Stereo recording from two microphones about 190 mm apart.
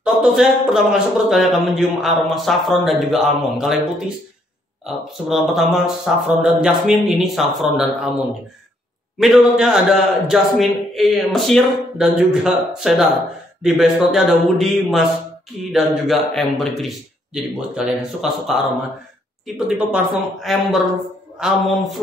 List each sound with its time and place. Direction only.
0.0 s a man's voice: 5° right (ahead or behind)
4.8 s a man's voice: centre (ahead or behind)
9.2 s a man's voice: centre (ahead or behind)